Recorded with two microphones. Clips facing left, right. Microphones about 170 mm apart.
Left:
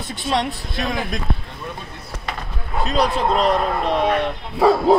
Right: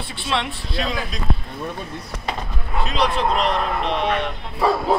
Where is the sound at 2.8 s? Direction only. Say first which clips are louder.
Left 2 dB; 40° left (ahead or behind).